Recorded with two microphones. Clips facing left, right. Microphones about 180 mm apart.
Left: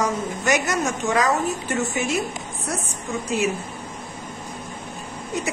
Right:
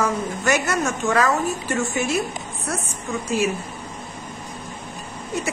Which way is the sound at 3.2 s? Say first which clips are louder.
Right 1 dB; 20° left (ahead or behind).